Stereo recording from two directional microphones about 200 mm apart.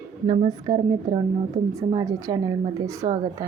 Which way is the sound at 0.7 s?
25° right (ahead or behind).